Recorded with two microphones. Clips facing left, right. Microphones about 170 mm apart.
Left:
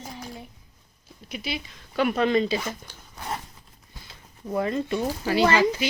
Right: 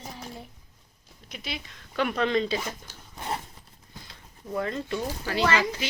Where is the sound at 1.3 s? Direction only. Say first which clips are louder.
Left 5 dB; 5° left (ahead or behind).